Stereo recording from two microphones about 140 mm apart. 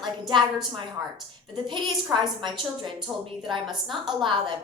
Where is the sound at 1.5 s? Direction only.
35° right (ahead or behind).